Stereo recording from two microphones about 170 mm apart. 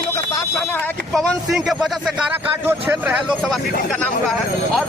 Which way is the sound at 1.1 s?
5° left (ahead or behind).